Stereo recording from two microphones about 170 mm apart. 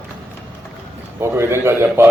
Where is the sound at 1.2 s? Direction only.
15° right (ahead or behind).